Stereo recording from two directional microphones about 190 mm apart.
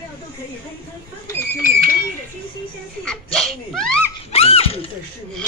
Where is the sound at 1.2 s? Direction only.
15° left (ahead or behind).